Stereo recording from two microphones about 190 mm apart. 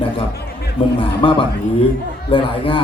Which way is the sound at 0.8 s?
30° left (ahead or behind).